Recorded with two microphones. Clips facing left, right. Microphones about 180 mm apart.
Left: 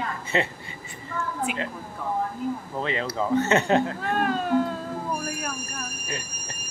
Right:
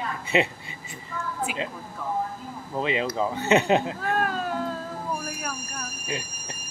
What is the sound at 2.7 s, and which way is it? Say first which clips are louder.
Speech: right 2 dB; 15° right (ahead or behind).